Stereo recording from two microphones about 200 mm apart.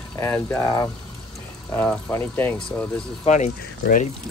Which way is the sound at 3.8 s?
45° left (ahead or behind).